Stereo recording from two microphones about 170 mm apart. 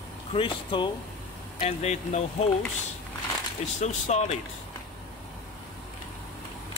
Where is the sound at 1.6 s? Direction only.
40° left (ahead or behind).